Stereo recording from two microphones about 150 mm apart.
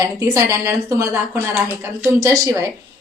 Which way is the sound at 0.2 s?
20° right (ahead or behind).